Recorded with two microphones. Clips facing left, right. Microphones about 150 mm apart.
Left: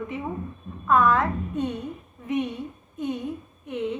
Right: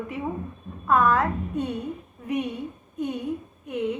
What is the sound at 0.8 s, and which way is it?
Speech, 35° right (ahead or behind).